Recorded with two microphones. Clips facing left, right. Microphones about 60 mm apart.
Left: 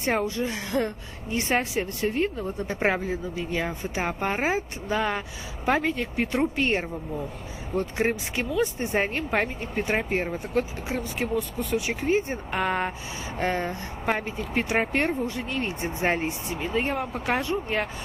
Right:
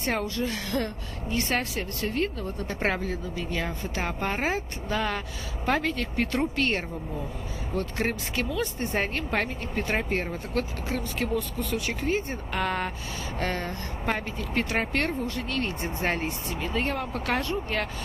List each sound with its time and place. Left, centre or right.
0.0 s a woman's voice: centre